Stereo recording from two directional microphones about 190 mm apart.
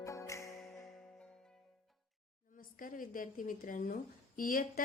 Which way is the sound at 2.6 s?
45° left (ahead or behind).